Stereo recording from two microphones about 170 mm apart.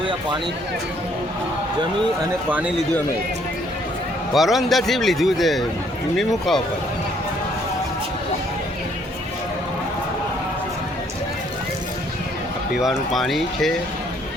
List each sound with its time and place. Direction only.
4.4 s a man's voice: centre (ahead or behind)
12.7 s a man's voice: centre (ahead or behind)